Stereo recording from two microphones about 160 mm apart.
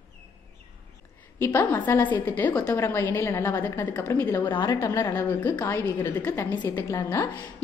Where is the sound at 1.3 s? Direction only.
15° left (ahead or behind).